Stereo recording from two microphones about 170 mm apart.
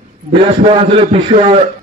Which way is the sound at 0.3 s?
35° right (ahead or behind).